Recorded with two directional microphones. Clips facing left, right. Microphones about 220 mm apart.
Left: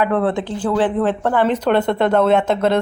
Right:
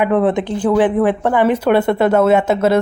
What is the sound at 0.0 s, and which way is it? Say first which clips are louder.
Speech: right 3 dB; 15° right (ahead or behind).